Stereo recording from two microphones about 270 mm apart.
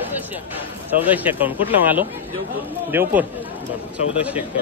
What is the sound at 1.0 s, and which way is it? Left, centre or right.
Speech, centre.